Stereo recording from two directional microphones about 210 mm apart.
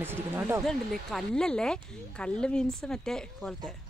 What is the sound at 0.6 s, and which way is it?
Speech, centre (ahead or behind).